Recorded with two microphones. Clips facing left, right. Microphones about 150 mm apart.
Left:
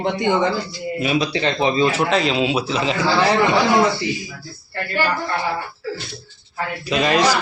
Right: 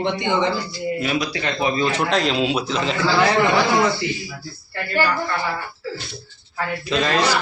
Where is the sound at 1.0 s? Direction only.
25° left (ahead or behind).